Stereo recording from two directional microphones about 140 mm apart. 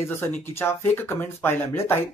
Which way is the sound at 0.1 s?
15° left (ahead or behind).